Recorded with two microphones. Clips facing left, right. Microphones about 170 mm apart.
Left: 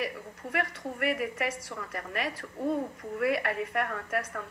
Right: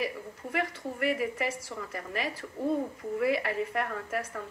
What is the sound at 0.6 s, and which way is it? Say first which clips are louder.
A woman's voice: even; 55° left (ahead or behind).